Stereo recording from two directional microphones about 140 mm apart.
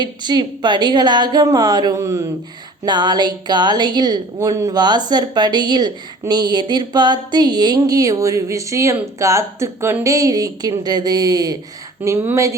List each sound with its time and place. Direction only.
0.0 s a woman's voice: 30° right (ahead or behind)